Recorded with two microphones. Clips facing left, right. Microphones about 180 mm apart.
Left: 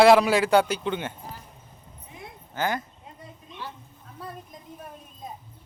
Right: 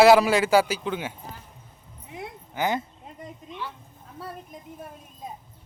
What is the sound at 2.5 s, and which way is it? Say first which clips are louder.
Speech: right 2 dB; 20° right (ahead or behind).